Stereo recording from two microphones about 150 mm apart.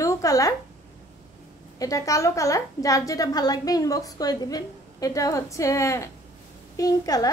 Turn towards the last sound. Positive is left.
turn(degrees=25)  # may be behind; listen again after turning